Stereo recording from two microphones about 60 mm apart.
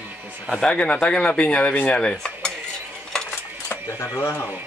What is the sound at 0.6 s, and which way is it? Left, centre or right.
Cutlery, centre.